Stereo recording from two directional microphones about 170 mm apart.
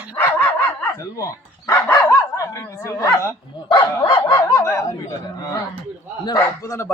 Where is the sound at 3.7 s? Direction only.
30° left (ahead or behind).